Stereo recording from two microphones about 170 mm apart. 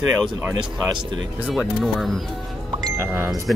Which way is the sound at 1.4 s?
5° right (ahead or behind).